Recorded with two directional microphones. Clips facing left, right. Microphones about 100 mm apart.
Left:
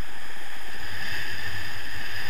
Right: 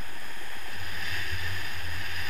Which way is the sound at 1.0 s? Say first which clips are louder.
Left 1 dB; 45° left (ahead or behind).